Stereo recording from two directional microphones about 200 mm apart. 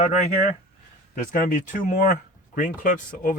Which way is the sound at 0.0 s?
35° left (ahead or behind).